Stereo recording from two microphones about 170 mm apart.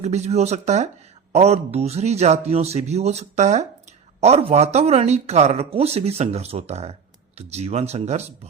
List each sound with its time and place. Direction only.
0.0 s speech: 40° right (ahead or behind)